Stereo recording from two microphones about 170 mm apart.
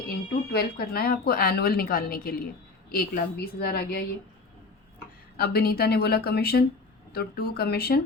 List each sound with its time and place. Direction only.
0.5 s a woman's voice: 65° left (ahead or behind)
5.4 s speech: 65° left (ahead or behind)